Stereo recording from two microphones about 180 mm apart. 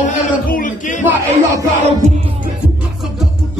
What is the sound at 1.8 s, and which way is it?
Music, 40° right (ahead or behind).